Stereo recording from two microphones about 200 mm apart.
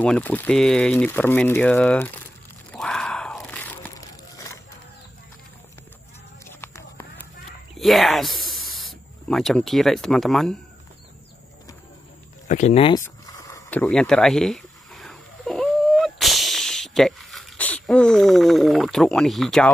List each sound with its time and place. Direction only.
0.0 s speech: 5° left (ahead or behind)
2.7 s crunch: 5° left (ahead or behind)
6.4 s a sound: 15° left (ahead or behind)
7.7 s speech: centre (ahead or behind)
12.4 s speech: 35° left (ahead or behind)
13.0 s a sound: 15° left (ahead or behind)